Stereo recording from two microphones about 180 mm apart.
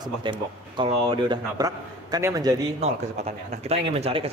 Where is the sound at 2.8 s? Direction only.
35° right (ahead or behind).